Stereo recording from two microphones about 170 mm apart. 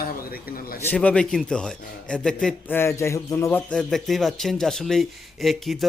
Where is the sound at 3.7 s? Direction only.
Centre (ahead or behind).